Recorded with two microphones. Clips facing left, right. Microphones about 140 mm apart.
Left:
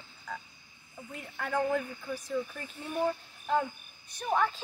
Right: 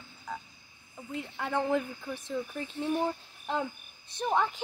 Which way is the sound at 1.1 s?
20° right (ahead or behind).